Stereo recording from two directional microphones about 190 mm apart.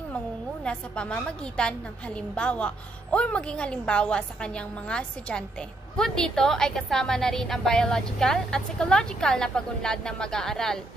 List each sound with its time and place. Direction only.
0.7 s a woman's voice: 5° left (ahead or behind)